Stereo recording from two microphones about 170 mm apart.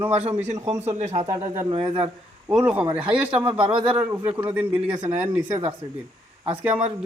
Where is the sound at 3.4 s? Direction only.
30° right (ahead or behind).